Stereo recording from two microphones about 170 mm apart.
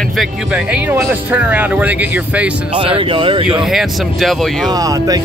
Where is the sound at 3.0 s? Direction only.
30° right (ahead or behind).